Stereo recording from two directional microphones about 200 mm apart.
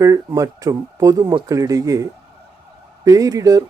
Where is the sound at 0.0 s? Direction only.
15° right (ahead or behind).